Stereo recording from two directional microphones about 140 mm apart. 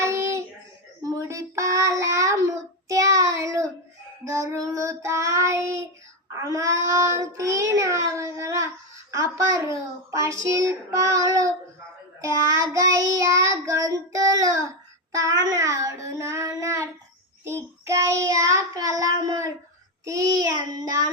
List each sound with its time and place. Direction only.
0.0 s child singing: 20° right (ahead or behind)
12.2 s child singing: 25° right (ahead or behind)